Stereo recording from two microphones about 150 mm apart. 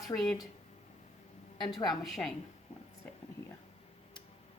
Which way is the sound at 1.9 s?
Centre (ahead or behind).